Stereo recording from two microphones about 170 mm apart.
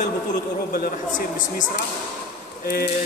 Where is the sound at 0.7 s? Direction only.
55° left (ahead or behind).